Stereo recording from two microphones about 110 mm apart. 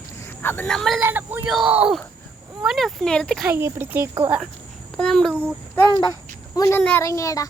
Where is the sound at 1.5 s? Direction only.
Centre (ahead or behind).